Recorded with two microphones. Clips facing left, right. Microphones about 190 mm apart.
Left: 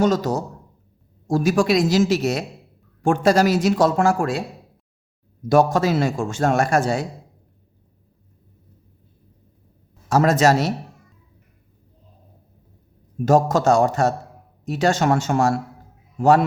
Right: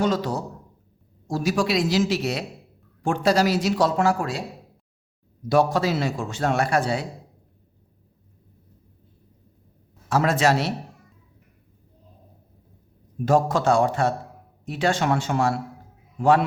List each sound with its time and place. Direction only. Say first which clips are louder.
0.0 s a man's voice: left 4 dB; 45° left (ahead or behind)
5.5 s a man's voice: left 3 dB; 45° left (ahead or behind)
10.1 s a man's voice: left 4 dB; 40° left (ahead or behind)
13.2 s a man's voice: left 3 dB; 45° left (ahead or behind)